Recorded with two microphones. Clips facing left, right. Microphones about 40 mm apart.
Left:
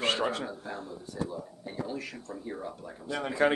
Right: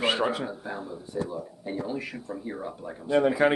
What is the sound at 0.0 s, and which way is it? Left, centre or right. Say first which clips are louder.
Speech: right 3 dB; centre.